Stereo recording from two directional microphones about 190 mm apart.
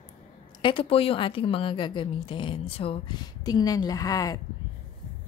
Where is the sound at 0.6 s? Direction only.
25° left (ahead or behind).